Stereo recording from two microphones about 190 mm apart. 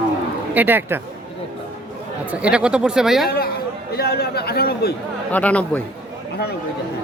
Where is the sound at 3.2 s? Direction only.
55° left (ahead or behind).